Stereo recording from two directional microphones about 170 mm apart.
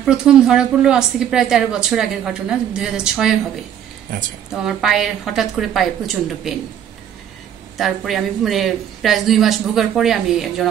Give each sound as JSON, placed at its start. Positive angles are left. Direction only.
{"t": 0.0, "sound": "a woman's voice", "side_deg": -5}
{"t": 4.5, "sound": "a woman's voice", "side_deg": 0}
{"t": 7.7, "sound": "a woman's voice", "side_deg": 0}